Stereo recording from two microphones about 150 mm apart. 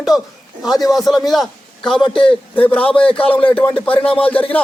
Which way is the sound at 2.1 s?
35° left (ahead or behind).